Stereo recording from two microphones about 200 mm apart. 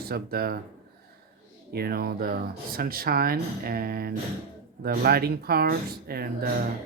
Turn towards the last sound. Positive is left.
turn(degrees=-50)  # may be behind; listen again after turning